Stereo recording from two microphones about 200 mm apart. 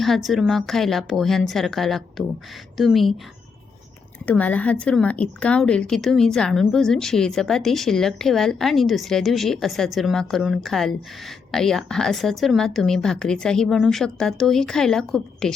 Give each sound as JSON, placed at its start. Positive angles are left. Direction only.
{"t": 0.0, "sound": "speech", "side_deg": 0}
{"t": 4.3, "sound": "speech", "side_deg": 5}